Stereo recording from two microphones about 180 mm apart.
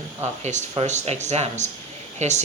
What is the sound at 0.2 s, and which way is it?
Speech, 40° right (ahead or behind).